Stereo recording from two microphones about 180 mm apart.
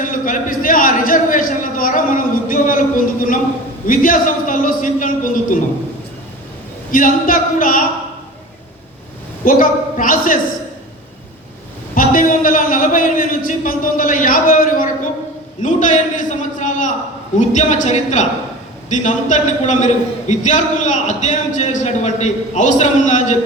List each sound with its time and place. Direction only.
0.0 s a man's voice: 45° left (ahead or behind)
6.9 s a man's voice: 50° left (ahead or behind)
9.4 s a man's voice: 50° left (ahead or behind)
11.9 s a man's voice: 50° left (ahead or behind)